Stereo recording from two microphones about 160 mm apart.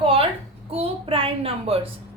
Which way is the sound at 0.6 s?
35° right (ahead or behind).